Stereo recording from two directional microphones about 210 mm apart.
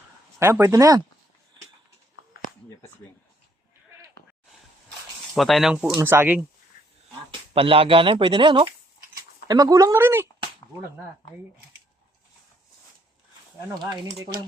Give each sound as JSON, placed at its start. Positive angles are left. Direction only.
{"t": 0.3, "sound": "speech", "side_deg": -10}
{"t": 5.3, "sound": "speech", "side_deg": 0}
{"t": 7.5, "sound": "speech", "side_deg": -25}